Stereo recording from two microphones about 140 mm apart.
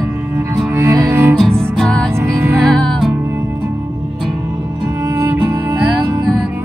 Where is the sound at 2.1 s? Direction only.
20° right (ahead or behind).